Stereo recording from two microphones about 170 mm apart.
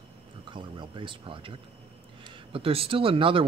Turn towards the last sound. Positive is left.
turn(degrees=-30)  # may be behind; listen again after turning